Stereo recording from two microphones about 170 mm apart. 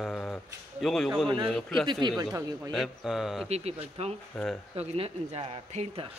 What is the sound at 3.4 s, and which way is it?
Speech, 40° right (ahead or behind).